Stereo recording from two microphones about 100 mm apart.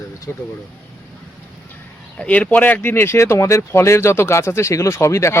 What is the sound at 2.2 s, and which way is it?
Speech, 15° left (ahead or behind).